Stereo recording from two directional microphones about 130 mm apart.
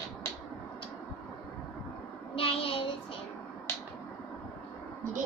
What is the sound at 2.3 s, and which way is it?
Speech, 45° left (ahead or behind).